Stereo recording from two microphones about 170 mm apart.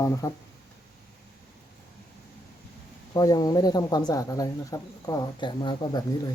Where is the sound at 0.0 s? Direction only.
20° left (ahead or behind).